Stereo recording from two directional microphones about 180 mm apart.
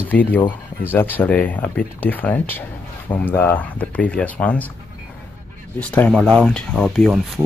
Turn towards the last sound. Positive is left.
turn(degrees=0)  # may be behind; listen again after turning